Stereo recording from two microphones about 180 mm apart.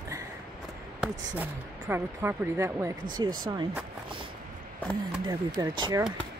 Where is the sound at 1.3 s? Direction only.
10° right (ahead or behind).